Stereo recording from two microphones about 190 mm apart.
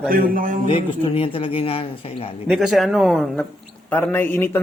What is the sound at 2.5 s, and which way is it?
A man's voice, centre (ahead or behind).